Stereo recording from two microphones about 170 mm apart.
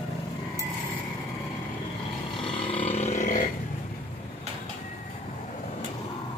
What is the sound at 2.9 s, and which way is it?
Roar, 45° left (ahead or behind).